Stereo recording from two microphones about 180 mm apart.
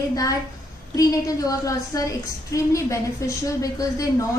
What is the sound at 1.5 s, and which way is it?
A woman's voice, 20° left (ahead or behind).